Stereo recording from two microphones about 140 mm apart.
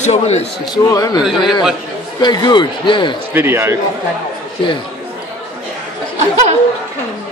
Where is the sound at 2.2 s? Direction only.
30° left (ahead or behind).